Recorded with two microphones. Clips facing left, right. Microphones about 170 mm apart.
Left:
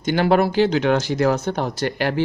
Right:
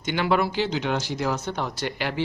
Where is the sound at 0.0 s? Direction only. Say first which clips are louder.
Left 6 dB; 40° left (ahead or behind).